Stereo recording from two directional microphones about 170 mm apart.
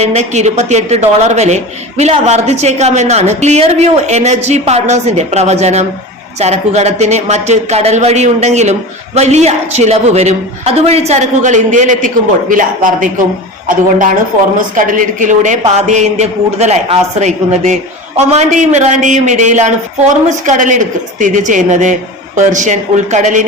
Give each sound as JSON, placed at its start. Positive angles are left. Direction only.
{"t": 0.0, "sound": "speech", "side_deg": -40}
{"t": 14.8, "sound": "a man's voice", "side_deg": -50}